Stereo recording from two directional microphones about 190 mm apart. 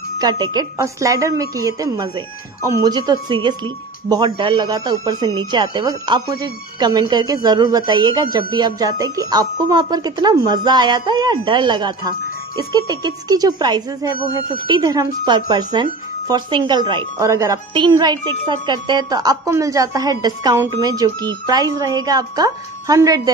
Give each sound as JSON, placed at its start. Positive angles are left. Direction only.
{"t": 0.2, "sound": "speech", "side_deg": -20}